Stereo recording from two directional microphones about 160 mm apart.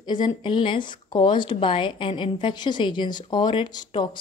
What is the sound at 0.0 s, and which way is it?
Speech, 25° left (ahead or behind).